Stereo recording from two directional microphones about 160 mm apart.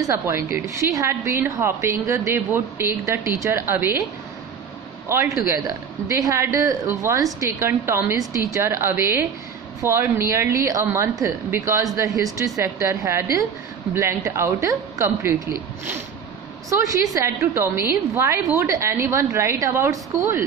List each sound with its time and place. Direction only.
0.0 s a woman's voice: 15° right (ahead or behind)
5.0 s a woman's voice: 15° right (ahead or behind)